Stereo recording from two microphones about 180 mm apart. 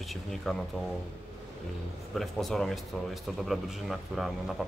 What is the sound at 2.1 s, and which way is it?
A man's voice, centre (ahead or behind).